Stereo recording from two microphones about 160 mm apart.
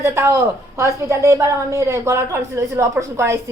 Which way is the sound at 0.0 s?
15° right (ahead or behind).